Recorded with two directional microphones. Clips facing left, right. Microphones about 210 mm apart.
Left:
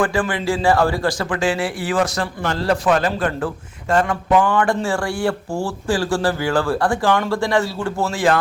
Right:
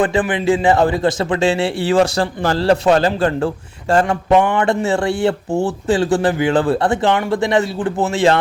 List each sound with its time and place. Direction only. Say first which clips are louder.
0.0 s a man's voice: right 3 dB; 20° right (ahead or behind)